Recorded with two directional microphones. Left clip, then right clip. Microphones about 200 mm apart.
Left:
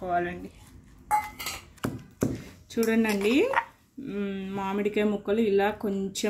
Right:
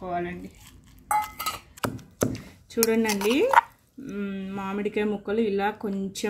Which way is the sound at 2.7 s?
5° left (ahead or behind).